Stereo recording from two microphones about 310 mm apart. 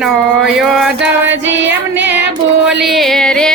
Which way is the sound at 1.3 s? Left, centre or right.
Right.